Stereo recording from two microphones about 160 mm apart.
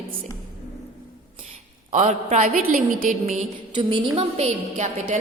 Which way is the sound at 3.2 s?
50° right (ahead or behind).